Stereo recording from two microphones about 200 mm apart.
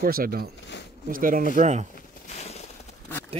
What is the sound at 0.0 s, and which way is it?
Speech, 45° right (ahead or behind).